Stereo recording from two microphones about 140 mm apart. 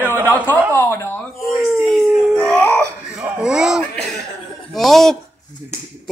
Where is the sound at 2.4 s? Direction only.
10° left (ahead or behind).